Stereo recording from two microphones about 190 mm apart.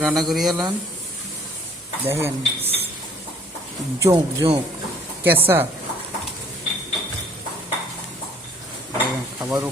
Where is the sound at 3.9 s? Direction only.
15° right (ahead or behind).